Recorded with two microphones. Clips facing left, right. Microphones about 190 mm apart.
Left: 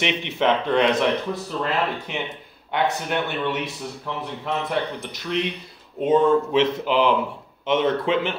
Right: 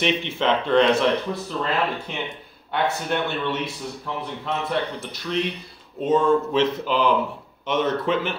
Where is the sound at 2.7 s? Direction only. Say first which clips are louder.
Left 1 dB; 15° left (ahead or behind).